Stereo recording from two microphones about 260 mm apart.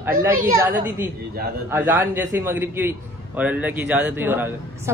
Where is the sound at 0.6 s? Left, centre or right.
Centre.